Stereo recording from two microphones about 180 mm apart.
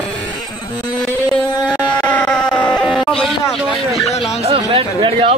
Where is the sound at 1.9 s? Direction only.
5° left (ahead or behind).